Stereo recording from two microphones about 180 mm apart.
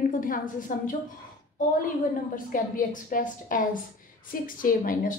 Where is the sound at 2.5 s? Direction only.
50° left (ahead or behind).